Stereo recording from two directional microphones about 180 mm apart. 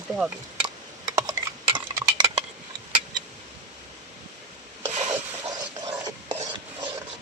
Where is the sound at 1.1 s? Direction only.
25° right (ahead or behind).